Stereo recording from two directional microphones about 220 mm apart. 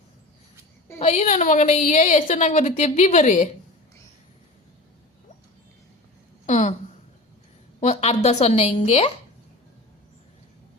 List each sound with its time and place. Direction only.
0.9 s a woman's voice: 30° left (ahead or behind)
6.4 s a sound: 35° left (ahead or behind)
7.8 s a woman's voice: 30° left (ahead or behind)